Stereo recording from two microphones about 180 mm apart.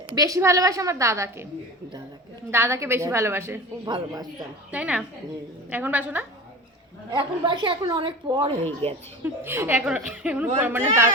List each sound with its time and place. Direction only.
0.1 s a woman's voice: 20° right (ahead or behind)
2.5 s a woman's voice: 15° right (ahead or behind)
4.7 s a woman's voice: 5° right (ahead or behind)
7.1 s a woman's voice: 25° right (ahead or behind)
9.2 s a woman's voice: 10° right (ahead or behind)